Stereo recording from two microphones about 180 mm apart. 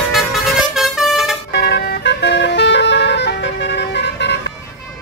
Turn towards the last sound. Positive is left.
turn(degrees=70)  # may be behind; listen again after turning